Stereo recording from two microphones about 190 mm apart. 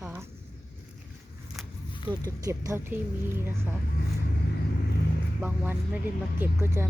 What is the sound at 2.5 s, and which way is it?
Speech, 15° right (ahead or behind).